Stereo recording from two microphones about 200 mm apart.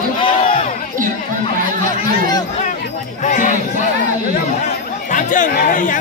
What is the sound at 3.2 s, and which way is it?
Crowd, 40° left (ahead or behind).